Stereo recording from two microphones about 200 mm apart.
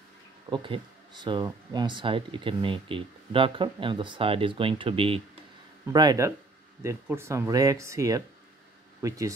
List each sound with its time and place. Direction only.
0.5 s speech: 20° right (ahead or behind)
5.9 s speech: 20° right (ahead or behind)